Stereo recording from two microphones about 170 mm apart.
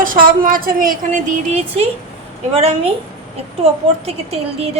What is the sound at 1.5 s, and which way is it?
A woman's voice, 35° right (ahead or behind).